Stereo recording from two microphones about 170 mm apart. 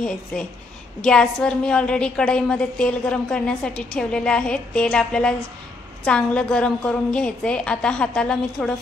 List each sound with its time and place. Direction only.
0.0 s a woman's voice: 5° left (ahead or behind)